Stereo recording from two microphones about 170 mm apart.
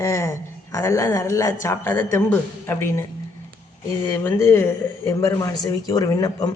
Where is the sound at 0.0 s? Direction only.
15° left (ahead or behind).